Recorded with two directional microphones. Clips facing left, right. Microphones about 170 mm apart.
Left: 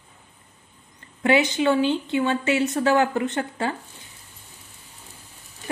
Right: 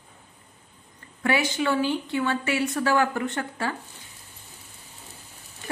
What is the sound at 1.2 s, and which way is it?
A woman's voice, 20° left (ahead or behind).